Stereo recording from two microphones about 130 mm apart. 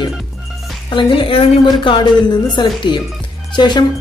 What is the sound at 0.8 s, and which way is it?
A woman's voice, 40° left (ahead or behind).